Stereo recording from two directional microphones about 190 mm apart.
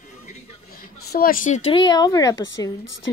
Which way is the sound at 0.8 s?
50° left (ahead or behind).